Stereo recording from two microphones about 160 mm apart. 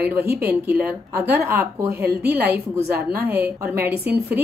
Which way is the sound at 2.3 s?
10° right (ahead or behind).